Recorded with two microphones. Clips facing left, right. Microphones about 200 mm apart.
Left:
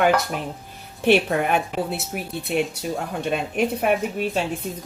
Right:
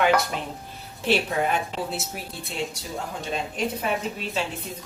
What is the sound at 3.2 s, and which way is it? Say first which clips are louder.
Speech: left 6 dB; 60° left (ahead or behind).